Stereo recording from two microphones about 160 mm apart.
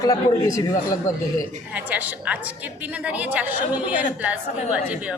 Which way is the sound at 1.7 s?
10° right (ahead or behind).